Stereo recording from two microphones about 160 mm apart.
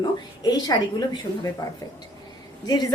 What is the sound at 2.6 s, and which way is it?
Speech, 25° left (ahead or behind).